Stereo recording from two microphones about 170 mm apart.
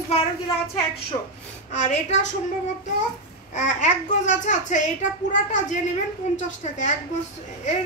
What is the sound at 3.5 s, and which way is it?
A child's voice, 45° left (ahead or behind).